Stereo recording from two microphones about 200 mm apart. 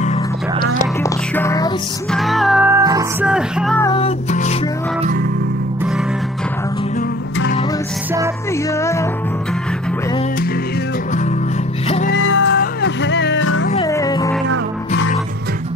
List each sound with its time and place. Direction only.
0.0 s music: 30° left (ahead or behind)
1.0 s music: 15° left (ahead or behind)
2.0 s music: centre (ahead or behind)
2.7 s music: 15° right (ahead or behind)
3.3 s music: 5° right (ahead or behind)
3.9 s music: 30° left (ahead or behind)
8.7 s music: 15° left (ahead or behind)
12.1 s music: 70° left (ahead or behind)
13.8 s music: 15° left (ahead or behind)